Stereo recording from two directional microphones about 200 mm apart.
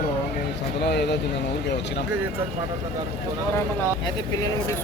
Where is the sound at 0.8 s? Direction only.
55° left (ahead or behind).